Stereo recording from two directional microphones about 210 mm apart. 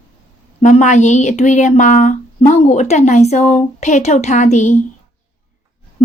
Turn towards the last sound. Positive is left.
turn(degrees=30)  # may be behind; listen again after turning